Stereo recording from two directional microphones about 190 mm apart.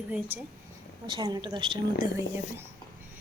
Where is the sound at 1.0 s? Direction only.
25° right (ahead or behind).